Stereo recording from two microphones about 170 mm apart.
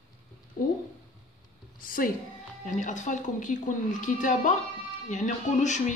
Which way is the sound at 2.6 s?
45° left (ahead or behind).